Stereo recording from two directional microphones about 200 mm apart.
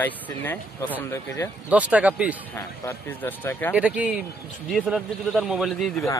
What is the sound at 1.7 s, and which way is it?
Speech, 5° right (ahead or behind).